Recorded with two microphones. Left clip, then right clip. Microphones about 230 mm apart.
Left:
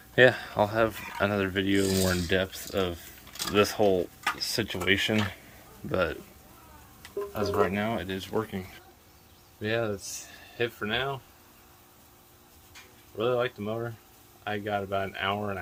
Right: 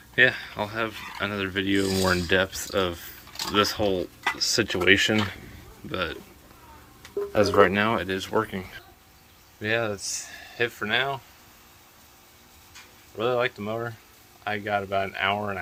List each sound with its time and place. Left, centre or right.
0.2 s speech: left; by 3.0 s centre
3.5 s speech: centre
5.9 s a man's voice: left
7.7 s speech: centre
13.1 s speech: centre